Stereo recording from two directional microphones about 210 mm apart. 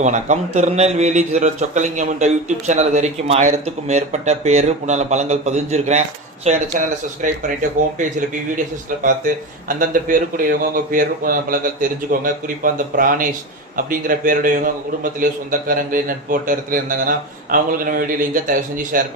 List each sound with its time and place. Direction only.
0.0 s a man's voice: 35° right (ahead or behind)